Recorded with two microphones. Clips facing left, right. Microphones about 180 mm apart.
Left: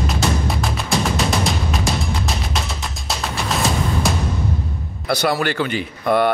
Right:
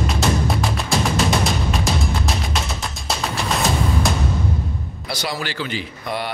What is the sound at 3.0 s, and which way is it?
Music, centre (ahead or behind).